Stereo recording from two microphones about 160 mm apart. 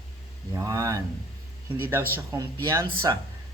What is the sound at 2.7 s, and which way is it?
Speech, 20° right (ahead or behind).